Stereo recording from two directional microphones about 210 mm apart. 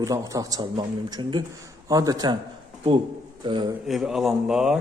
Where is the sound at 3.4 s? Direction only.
25° right (ahead or behind).